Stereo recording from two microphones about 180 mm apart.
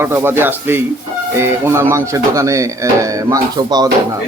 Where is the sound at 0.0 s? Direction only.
10° right (ahead or behind).